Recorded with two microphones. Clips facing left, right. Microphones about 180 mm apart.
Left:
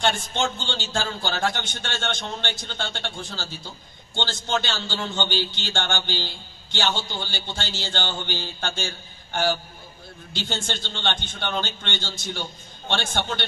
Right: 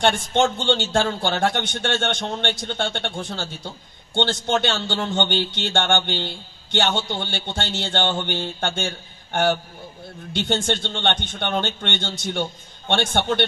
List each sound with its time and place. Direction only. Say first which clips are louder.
0.0 s speech: right 5 dB; 60° right (ahead or behind)